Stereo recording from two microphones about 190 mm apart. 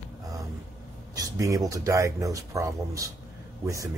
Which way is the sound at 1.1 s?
20° right (ahead or behind).